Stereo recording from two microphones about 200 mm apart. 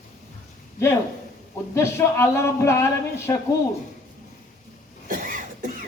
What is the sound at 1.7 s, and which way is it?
Speech, 15° left (ahead or behind).